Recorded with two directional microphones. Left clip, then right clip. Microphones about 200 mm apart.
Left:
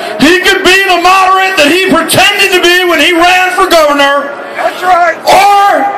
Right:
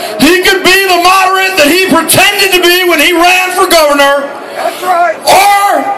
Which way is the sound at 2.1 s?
15° right (ahead or behind).